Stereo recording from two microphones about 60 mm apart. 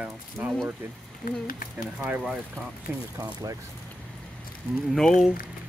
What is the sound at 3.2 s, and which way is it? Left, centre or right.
Speech, right.